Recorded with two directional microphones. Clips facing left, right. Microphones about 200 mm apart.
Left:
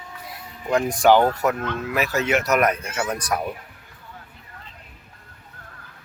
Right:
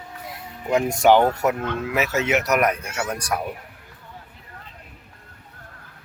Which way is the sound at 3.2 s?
10° right (ahead or behind).